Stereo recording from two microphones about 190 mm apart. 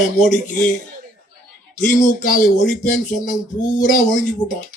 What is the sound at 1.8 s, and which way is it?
Speech, 45° left (ahead or behind).